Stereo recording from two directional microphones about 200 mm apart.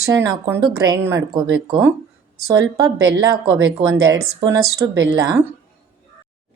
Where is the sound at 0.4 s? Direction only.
15° right (ahead or behind).